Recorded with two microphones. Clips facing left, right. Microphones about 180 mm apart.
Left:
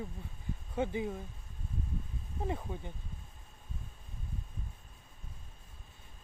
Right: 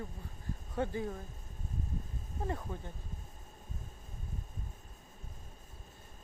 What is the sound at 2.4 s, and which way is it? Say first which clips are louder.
Speech: left 1 dB; 15° left (ahead or behind).